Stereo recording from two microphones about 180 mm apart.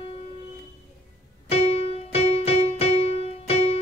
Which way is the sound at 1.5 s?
35° left (ahead or behind).